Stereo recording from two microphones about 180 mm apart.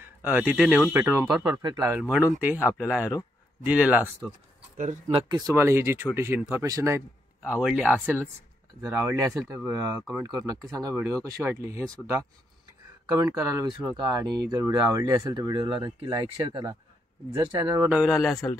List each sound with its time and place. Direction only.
0.0 s speech: 10° right (ahead or behind)
1.9 s speech: 10° right (ahead or behind)
4.7 s speech: 45° right (ahead or behind)
5.1 s speech: 20° right (ahead or behind)
17.9 s speech: centre (ahead or behind)